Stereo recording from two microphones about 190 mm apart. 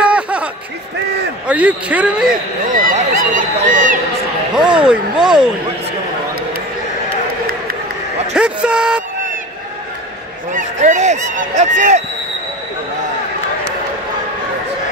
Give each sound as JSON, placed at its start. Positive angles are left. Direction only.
{"t": 0.0, "sound": "a sound", "side_deg": -5}
{"t": 1.5, "sound": "a man's voice", "side_deg": -5}
{"t": 2.7, "sound": "a sound", "side_deg": -45}
{"t": 4.6, "sound": "speech", "side_deg": -5}
{"t": 8.3, "sound": "speech", "side_deg": -5}
{"t": 10.5, "sound": "speech", "side_deg": -40}